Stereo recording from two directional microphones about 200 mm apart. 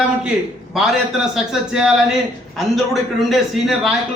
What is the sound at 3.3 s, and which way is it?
Speech, centre (ahead or behind).